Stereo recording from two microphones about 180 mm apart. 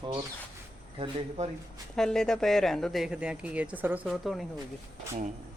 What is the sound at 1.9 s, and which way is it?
Speech, 5° left (ahead or behind).